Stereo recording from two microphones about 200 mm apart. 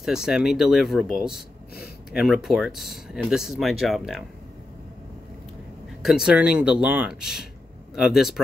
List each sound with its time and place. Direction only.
0.0 s speech: centre (ahead or behind)
6.0 s speech: 5° right (ahead or behind)